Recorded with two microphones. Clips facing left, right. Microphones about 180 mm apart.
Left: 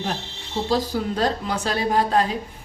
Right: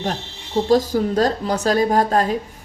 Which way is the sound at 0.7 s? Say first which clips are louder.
Right 6 dB; 45° right (ahead or behind).